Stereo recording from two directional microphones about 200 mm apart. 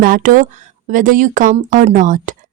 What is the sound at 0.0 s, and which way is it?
A woman's voice, 45° right (ahead or behind).